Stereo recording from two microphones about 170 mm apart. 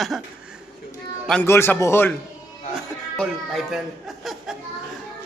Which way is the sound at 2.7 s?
Centre (ahead or behind).